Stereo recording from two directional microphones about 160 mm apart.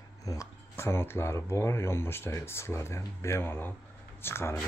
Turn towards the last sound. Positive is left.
turn(degrees=15)  # may be behind; listen again after turning